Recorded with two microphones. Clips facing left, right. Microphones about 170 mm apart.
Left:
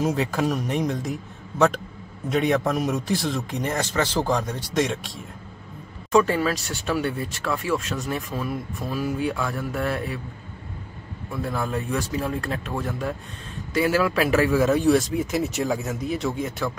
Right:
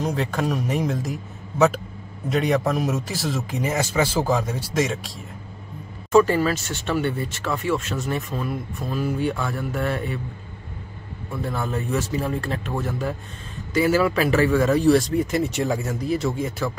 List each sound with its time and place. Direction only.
0.0 s speech: centre (ahead or behind)
11.4 s speech: centre (ahead or behind)